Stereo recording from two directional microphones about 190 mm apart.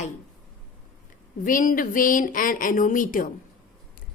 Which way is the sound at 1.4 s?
45° left (ahead or behind).